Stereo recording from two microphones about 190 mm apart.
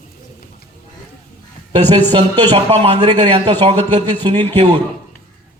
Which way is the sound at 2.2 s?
25° right (ahead or behind).